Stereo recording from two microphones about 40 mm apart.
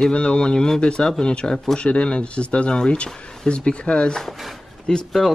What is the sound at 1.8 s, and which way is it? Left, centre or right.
Speech, left.